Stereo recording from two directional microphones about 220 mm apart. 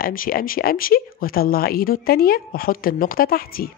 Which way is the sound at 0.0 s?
40° left (ahead or behind).